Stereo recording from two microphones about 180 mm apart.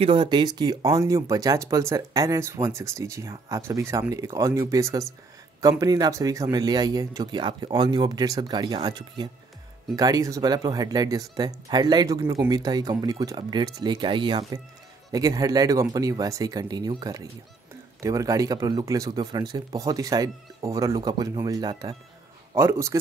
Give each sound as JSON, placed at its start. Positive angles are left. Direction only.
{"t": 0.0, "sound": "speech", "side_deg": -25}